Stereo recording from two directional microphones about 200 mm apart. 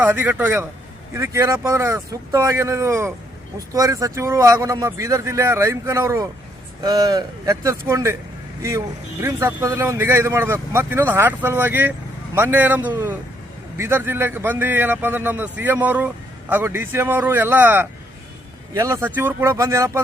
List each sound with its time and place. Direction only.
0.0 s a man's voice: 10° right (ahead or behind)
9.2 s a man's voice: 15° right (ahead or behind)